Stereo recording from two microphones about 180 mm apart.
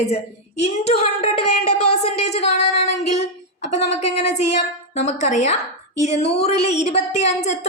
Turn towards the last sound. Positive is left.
turn(degrees=40)  # may be behind; listen again after turning